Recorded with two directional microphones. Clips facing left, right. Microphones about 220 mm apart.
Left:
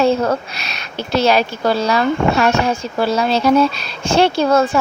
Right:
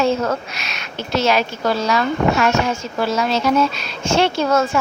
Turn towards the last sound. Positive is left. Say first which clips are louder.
# left 3 dB
turn(degrees=30)  # may be behind; listen again after turning